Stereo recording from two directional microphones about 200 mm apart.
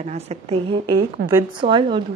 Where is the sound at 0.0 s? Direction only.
35° right (ahead or behind).